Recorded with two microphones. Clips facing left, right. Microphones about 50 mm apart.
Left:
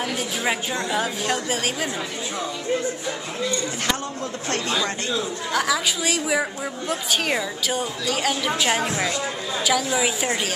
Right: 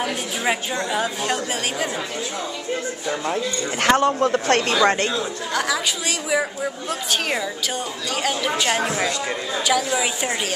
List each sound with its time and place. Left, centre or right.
0.0 s a woman's voice: centre
3.8 s a man's voice: right
5.5 s a woman's voice: centre